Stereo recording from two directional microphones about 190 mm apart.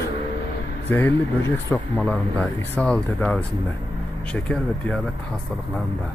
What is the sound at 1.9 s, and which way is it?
Speech, 5° left (ahead or behind).